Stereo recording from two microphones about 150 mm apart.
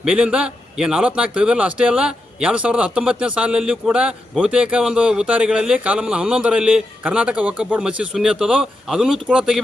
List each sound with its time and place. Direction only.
0.1 s a man's voice: 5° right (ahead or behind)